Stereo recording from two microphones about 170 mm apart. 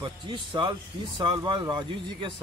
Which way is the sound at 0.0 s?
30° right (ahead or behind).